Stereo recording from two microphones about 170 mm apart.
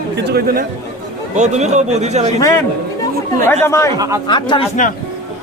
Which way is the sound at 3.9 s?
20° right (ahead or behind).